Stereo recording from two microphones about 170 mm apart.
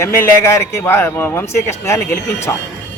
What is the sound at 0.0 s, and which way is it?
Speech, 15° left (ahead or behind).